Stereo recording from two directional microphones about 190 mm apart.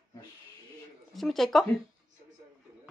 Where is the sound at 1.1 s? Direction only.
Centre (ahead or behind).